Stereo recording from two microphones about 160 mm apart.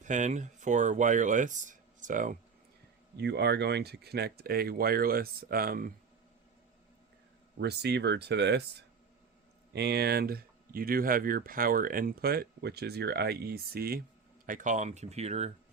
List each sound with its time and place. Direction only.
0.0 s speech: 50° right (ahead or behind)
3.2 s speech: 90° right; by 5.9 s 65° right (ahead or behind)
7.6 s speech: 90° right
9.7 s speech: 90° right; by 14.0 s 70° right (ahead or behind)
14.4 s speech: 55° right (ahead or behind)